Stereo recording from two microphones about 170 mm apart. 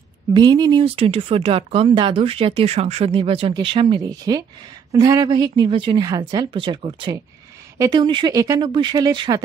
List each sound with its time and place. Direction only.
0.3 s speech: 25° right (ahead or behind)